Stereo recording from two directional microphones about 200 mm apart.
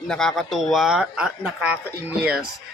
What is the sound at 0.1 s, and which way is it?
Speech, 5° left (ahead or behind).